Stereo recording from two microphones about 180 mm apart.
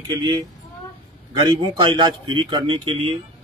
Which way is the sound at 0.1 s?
20° right (ahead or behind).